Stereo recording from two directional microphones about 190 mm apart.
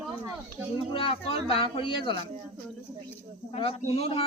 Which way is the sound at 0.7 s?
30° left (ahead or behind).